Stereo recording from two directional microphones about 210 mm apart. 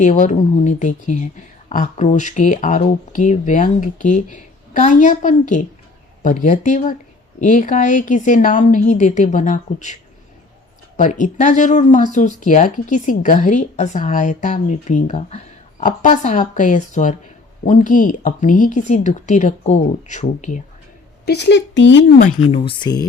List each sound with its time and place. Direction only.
0.0 s speech: 35° left (ahead or behind)
10.9 s speech: 35° left (ahead or behind)
21.2 s speech: 55° left (ahead or behind)
22.5 s speech: 25° left (ahead or behind)